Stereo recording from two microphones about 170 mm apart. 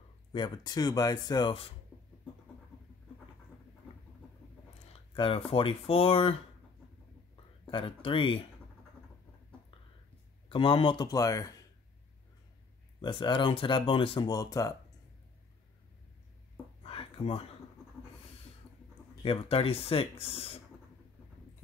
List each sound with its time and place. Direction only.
0.3 s speech: 25° left (ahead or behind)
5.1 s speech: 30° left (ahead or behind)
7.7 s speech: 30° left (ahead or behind)
10.5 s speech: 30° left (ahead or behind)
13.0 s speech: 25° left (ahead or behind)
16.8 s a sound: 35° left (ahead or behind)
19.2 s speech: 35° left (ahead or behind)